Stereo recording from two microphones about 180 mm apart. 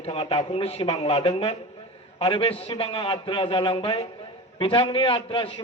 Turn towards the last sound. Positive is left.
turn(degrees=30)  # may be behind; listen again after turning